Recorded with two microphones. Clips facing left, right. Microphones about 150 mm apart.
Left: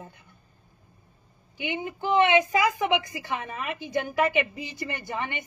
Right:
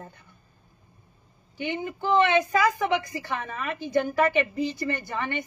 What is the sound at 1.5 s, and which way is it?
A woman's voice, 15° left (ahead or behind).